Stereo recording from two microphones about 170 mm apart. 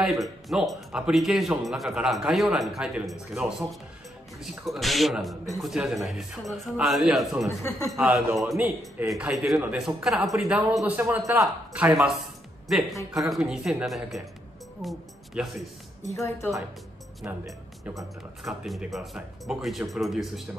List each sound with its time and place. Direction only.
0.0 s a man's voice: centre (ahead or behind)
8.5 s a man's voice: 15° right (ahead or behind)
9.1 s a man's voice: centre (ahead or behind)
16.1 s a woman's voice: 15° left (ahead or behind)
17.2 s speech: 10° right (ahead or behind)
18.4 s a man's voice: centre (ahead or behind)